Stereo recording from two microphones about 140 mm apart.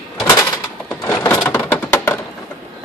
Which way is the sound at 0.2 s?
20° left (ahead or behind).